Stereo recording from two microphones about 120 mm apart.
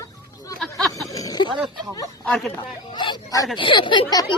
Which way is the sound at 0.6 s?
5° left (ahead or behind).